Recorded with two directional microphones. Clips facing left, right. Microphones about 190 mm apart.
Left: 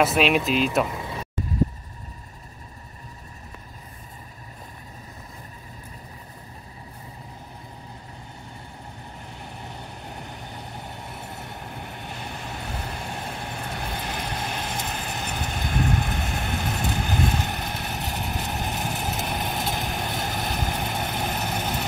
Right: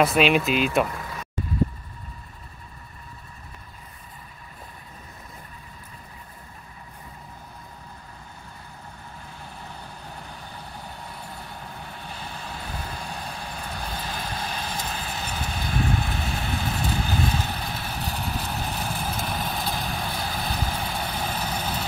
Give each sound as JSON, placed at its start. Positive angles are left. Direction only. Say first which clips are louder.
{"t": 0.0, "sound": "speech", "louder": "right 1 dB", "side_deg": 0}
{"t": 0.8, "sound": "vehicle", "louder": "left 2 dB", "side_deg": 20}
{"t": 9.4, "sound": "vehicle", "louder": "left 2 dB", "side_deg": 20}